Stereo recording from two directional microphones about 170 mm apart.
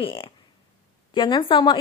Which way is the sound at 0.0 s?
30° left (ahead or behind).